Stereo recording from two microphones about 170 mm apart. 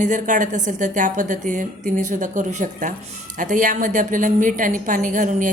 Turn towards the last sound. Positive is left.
turn(degrees=-50)  # may be behind; listen again after turning